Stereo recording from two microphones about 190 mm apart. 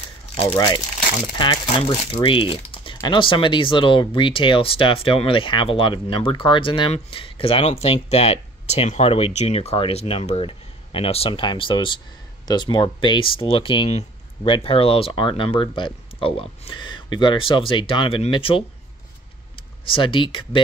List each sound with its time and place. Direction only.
0.6 s speech: 20° left (ahead or behind)